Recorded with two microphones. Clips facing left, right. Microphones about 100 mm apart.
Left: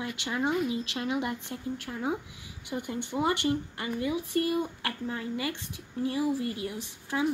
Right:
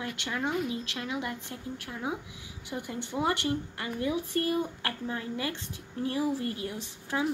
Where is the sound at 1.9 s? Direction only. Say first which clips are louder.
Left 3 dB; 5° left (ahead or behind).